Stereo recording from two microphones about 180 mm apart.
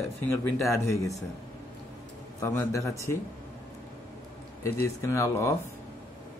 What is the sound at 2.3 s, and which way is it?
Speech, 15° left (ahead or behind).